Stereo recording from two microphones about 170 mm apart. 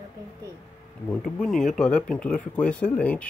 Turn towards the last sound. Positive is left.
turn(degrees=10)  # may be behind; listen again after turning